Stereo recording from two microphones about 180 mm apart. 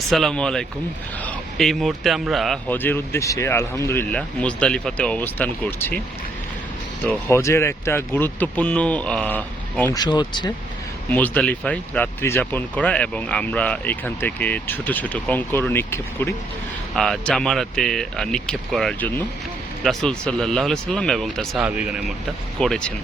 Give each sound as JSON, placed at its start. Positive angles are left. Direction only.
{"t": 0.1, "sound": "speech", "side_deg": 0}
{"t": 7.1, "sound": "speech", "side_deg": 15}
{"t": 9.9, "sound": "speech", "side_deg": 25}
{"t": 11.1, "sound": "speech", "side_deg": 10}
{"t": 16.9, "sound": "speech", "side_deg": 0}